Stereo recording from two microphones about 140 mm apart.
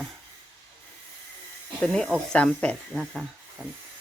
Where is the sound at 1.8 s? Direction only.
5° left (ahead or behind).